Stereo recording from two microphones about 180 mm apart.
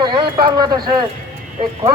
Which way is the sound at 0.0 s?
25° right (ahead or behind).